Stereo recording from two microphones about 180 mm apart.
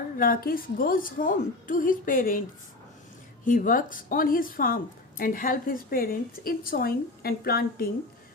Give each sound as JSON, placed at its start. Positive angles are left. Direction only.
{"t": 0.2, "sound": "speech", "side_deg": 55}
{"t": 3.4, "sound": "speech", "side_deg": 50}